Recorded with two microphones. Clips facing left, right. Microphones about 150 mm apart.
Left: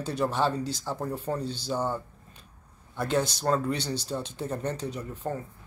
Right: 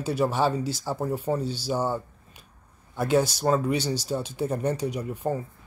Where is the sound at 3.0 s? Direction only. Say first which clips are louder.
Right 4 dB; 10° right (ahead or behind).